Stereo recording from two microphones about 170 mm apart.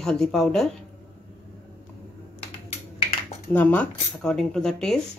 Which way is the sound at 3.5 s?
10° left (ahead or behind).